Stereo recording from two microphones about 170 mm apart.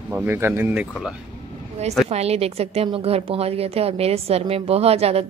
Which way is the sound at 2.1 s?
35° right (ahead or behind).